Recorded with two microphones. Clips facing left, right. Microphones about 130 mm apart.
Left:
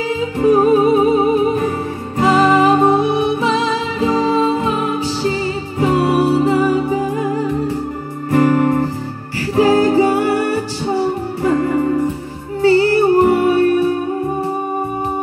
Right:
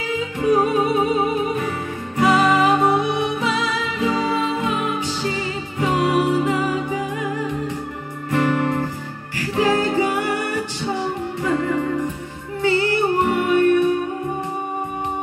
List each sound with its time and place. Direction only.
0.4 s music: 35° left (ahead or behind)